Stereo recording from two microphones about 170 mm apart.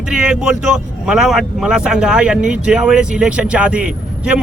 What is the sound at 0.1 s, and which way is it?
Speech, 5° right (ahead or behind).